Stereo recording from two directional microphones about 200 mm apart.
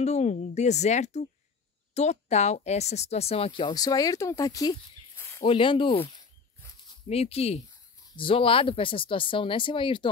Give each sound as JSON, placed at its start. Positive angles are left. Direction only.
{"t": 0.0, "sound": "speech", "side_deg": 35}
{"t": 5.4, "sound": "speech", "side_deg": 25}